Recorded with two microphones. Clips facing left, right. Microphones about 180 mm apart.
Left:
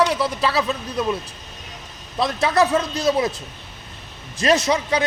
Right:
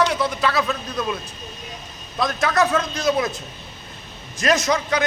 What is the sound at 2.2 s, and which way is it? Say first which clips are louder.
A man's voice: left 1 dB; 30° left (ahead or behind).